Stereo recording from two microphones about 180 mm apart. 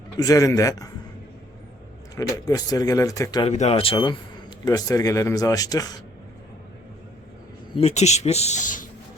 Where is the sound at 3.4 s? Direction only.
35° left (ahead or behind); by 6.0 s 20° left (ahead or behind).